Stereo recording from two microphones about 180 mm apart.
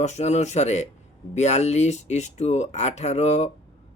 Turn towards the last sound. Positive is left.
turn(degrees=40)  # may be behind; listen again after turning